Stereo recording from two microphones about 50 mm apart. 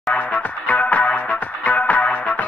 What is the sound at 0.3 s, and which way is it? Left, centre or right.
Music, left.